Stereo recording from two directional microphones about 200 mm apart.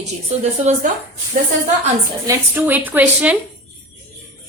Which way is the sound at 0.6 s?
35° right (ahead or behind).